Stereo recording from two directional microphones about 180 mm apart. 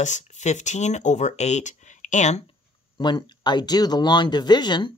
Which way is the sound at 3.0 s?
25° left (ahead or behind).